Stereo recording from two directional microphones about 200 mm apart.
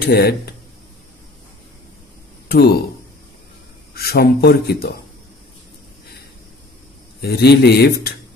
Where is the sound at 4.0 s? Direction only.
50° left (ahead or behind).